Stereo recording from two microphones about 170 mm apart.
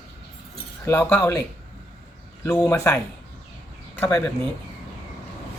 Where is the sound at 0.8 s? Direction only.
10° left (ahead or behind).